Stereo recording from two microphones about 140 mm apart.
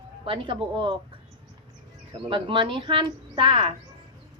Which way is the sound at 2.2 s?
35° right (ahead or behind).